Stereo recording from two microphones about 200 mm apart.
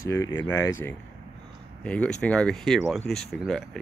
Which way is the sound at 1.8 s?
5° left (ahead or behind).